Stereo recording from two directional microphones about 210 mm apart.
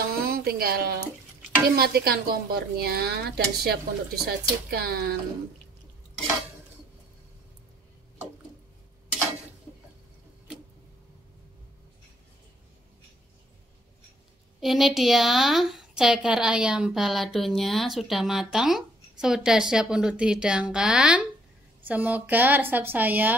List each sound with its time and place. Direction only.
0.0 s a sound: 45° right (ahead or behind)
1.8 s speech: 45° right (ahead or behind)
14.6 s a woman's voice: centre (ahead or behind)